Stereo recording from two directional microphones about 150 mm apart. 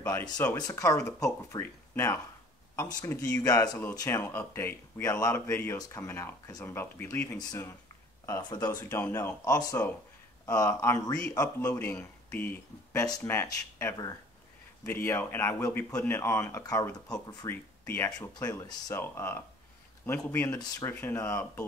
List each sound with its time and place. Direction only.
0.0 s speech: 10° left (ahead or behind)
0.6 s speech: 25° left (ahead or behind)